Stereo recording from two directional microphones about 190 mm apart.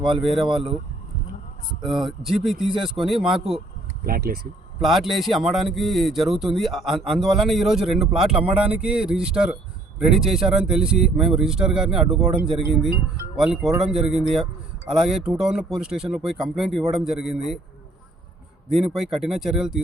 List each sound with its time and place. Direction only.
0.2 s a man's voice: centre (ahead or behind)
1.8 s a man's voice: centre (ahead or behind)
4.0 s speech: 50° right (ahead or behind)
4.8 s a man's voice: centre (ahead or behind)
18.7 s a man's voice: centre (ahead or behind)